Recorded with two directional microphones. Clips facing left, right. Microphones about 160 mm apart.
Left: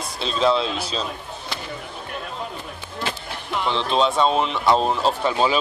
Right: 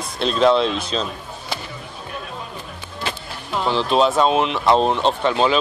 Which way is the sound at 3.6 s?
5° right (ahead or behind).